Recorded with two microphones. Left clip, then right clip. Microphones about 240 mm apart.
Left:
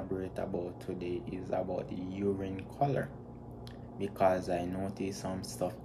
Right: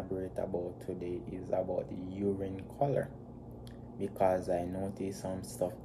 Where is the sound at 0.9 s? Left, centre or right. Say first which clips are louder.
Left 1 dB; right.